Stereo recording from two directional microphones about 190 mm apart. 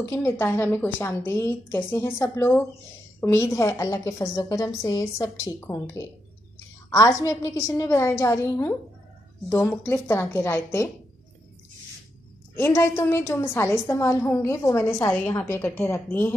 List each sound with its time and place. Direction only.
0.0 s a woman's voice: 15° left (ahead or behind)
12.5 s a woman's voice: 10° left (ahead or behind)